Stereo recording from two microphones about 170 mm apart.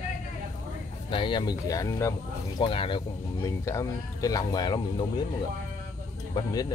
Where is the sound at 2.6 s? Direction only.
30° left (ahead or behind).